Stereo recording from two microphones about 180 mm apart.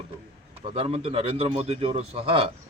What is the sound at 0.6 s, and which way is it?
Speech, 35° right (ahead or behind).